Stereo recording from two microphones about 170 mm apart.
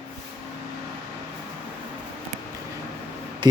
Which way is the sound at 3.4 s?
25° right (ahead or behind).